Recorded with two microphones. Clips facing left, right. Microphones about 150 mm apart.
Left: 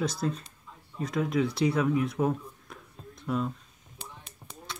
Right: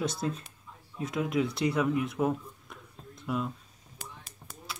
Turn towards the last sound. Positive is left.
turn(degrees=0)  # may be behind; listen again after turning